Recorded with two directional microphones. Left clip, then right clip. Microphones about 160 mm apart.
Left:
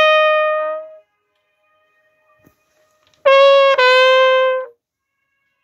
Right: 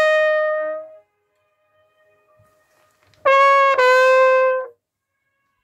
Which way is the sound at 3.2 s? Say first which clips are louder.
Left 4 dB; 30° right (ahead or behind).